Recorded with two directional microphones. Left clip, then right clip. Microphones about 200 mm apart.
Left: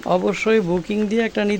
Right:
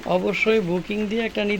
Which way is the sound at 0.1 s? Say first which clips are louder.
Left 2 dB; 25° left (ahead or behind).